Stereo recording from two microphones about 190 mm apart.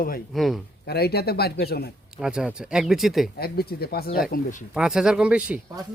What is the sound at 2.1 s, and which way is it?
Speech, 5° right (ahead or behind).